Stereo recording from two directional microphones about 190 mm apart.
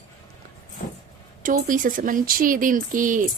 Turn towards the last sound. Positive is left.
turn(degrees=-45)  # may be behind; listen again after turning